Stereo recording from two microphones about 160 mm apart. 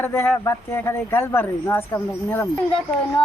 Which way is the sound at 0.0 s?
15° left (ahead or behind).